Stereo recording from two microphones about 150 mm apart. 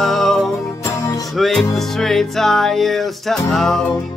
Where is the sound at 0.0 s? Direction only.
Centre (ahead or behind).